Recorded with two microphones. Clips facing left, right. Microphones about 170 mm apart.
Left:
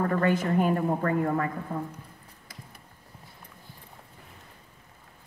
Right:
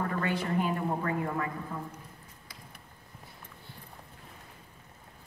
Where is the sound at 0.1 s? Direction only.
50° left (ahead or behind).